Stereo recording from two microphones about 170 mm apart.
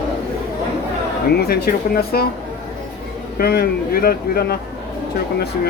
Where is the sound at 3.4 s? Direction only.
60° left (ahead or behind).